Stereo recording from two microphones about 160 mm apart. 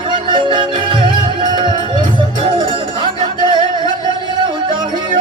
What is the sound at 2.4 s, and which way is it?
Music, 35° right (ahead or behind).